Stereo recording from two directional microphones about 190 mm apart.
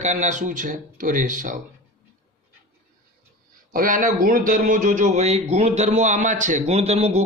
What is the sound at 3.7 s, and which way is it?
Speech, 45° right (ahead or behind).